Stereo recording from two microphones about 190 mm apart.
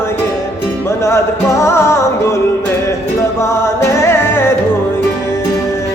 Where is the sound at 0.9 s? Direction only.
15° left (ahead or behind).